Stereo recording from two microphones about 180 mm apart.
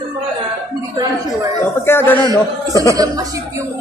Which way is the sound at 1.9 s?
15° left (ahead or behind).